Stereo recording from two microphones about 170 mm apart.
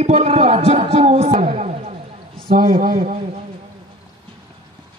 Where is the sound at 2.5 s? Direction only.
55° right (ahead or behind).